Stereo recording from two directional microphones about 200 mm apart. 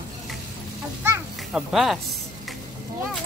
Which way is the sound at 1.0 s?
10° right (ahead or behind).